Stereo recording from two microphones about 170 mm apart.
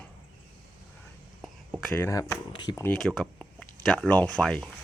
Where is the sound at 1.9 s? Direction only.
15° left (ahead or behind).